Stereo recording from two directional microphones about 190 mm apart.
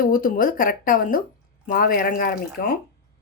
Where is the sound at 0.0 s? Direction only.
50° left (ahead or behind).